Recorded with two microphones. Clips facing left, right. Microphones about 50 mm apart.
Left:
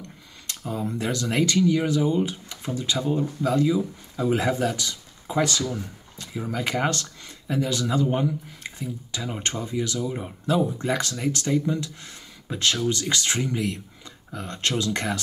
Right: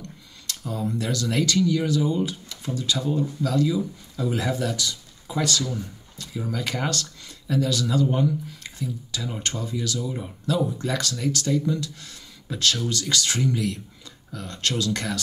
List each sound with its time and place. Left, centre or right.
0.5 s speech: left